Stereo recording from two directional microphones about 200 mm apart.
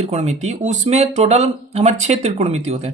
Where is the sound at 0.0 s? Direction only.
30° right (ahead or behind).